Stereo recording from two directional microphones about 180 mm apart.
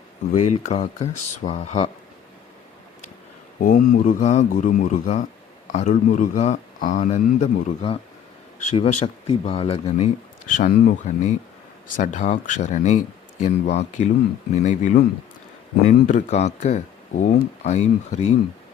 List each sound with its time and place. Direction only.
0.3 s speech: 40° left (ahead or behind)
3.6 s speech: 50° left (ahead or behind)
10.5 s speech: 45° left (ahead or behind)